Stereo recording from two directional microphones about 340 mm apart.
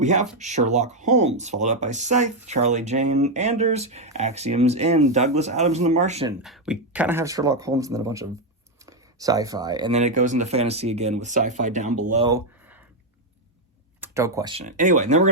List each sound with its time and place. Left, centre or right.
0.0 s speech: right
6.4 s speech: centre
14.0 s speech: centre